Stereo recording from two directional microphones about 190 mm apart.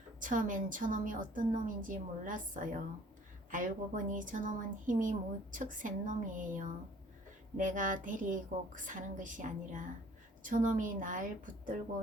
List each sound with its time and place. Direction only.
0.2 s a woman's voice: 45° right (ahead or behind)